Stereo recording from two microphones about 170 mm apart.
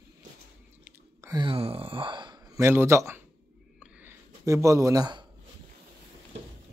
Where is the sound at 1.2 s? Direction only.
30° right (ahead or behind).